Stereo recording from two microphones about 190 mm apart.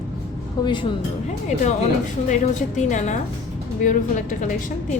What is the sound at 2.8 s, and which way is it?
A woman's voice, 40° left (ahead or behind).